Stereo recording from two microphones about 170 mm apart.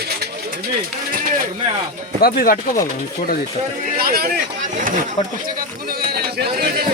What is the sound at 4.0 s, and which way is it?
Speech, 60° right (ahead or behind).